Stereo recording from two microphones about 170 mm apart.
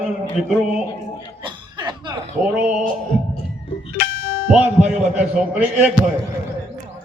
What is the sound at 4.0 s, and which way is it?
Music, 55° left (ahead or behind).